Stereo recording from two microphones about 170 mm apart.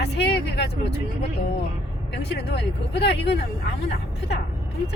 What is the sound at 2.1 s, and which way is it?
Speech, 80° left.